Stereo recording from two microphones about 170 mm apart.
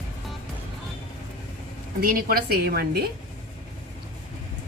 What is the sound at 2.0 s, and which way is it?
A woman's voice, 60° right (ahead or behind).